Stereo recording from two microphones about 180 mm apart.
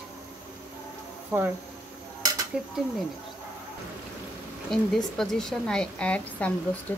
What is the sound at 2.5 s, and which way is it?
Speech, 5° right (ahead or behind).